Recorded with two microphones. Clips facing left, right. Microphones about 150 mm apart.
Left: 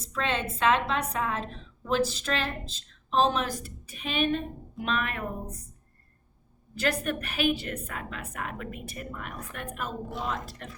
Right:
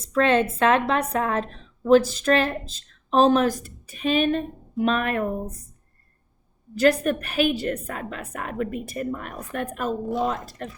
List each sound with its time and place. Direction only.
0.1 s a woman's voice: 55° right (ahead or behind)
6.7 s a woman's voice: 40° right (ahead or behind)